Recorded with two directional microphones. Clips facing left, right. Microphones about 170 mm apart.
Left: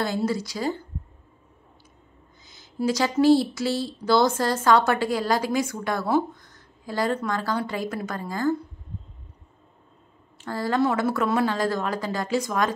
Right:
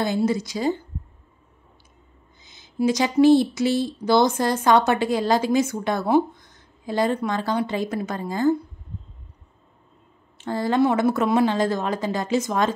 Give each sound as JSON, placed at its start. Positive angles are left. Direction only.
{"t": 0.0, "sound": "speech", "side_deg": -20}
{"t": 2.4, "sound": "speech", "side_deg": -20}
{"t": 10.3, "sound": "speech", "side_deg": -20}